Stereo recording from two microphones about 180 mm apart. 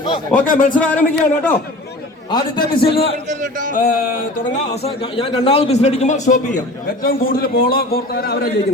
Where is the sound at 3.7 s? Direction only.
50° left (ahead or behind).